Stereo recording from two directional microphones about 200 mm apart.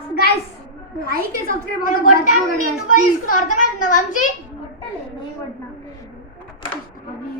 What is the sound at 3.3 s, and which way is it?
A child's voice, 40° left (ahead or behind).